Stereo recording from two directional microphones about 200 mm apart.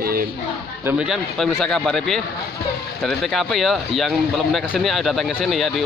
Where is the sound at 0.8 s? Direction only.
10° right (ahead or behind).